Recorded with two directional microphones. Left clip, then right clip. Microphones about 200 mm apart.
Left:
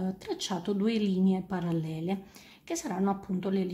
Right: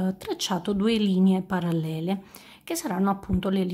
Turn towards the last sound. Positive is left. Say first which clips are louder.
# right 5 dB
turn(degrees=-35)  # may be behind; listen again after turning